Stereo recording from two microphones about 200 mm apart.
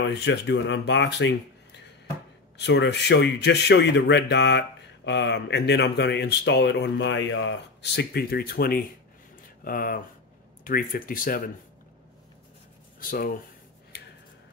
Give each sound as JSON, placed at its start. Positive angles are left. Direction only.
{"t": 0.1, "sound": "speech", "side_deg": 60}
{"t": 13.0, "sound": "speech", "side_deg": 45}
{"t": 13.9, "sound": "a sound", "side_deg": 50}